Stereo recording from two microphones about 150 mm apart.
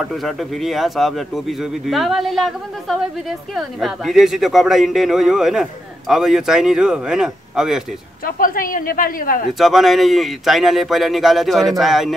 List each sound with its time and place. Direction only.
0.0 s a man's voice: centre (ahead or behind)
8.3 s a woman's voice: 70° left (ahead or behind)
9.5 s a man's voice: centre (ahead or behind)